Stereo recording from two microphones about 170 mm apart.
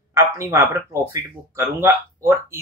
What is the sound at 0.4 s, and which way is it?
A man's voice, 15° right (ahead or behind).